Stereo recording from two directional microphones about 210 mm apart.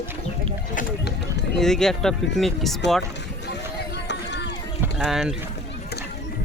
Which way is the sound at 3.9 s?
55° left (ahead or behind).